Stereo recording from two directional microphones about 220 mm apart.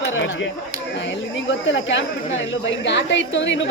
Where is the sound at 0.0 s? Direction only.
60° left (ahead or behind).